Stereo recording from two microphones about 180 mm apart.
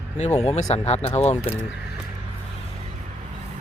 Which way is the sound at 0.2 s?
40° left (ahead or behind).